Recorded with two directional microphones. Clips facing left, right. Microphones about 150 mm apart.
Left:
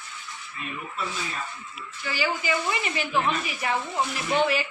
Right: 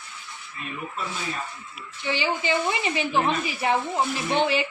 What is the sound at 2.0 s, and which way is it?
A woman's voice, 25° right (ahead or behind).